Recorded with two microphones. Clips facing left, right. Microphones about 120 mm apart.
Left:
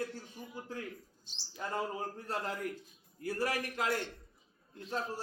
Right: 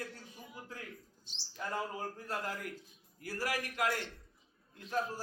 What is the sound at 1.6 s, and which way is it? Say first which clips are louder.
A man's voice: left 2 dB; 25° left (ahead or behind).